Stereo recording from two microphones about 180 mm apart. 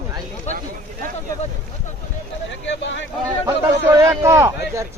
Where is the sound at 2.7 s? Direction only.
90° left.